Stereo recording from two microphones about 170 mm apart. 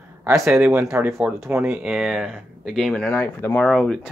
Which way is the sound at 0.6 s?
15° right (ahead or behind).